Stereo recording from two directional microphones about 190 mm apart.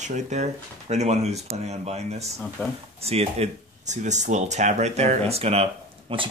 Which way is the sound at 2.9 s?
35° right (ahead or behind).